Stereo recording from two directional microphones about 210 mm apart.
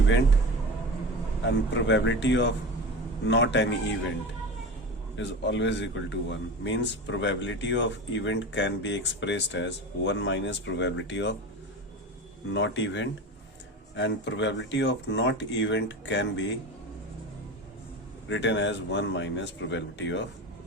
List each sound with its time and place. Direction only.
1.5 s speech: 60° left (ahead or behind)
5.1 s speech: 60° left (ahead or behind)
12.5 s speech: 60° left (ahead or behind)
18.3 s speech: 60° left (ahead or behind)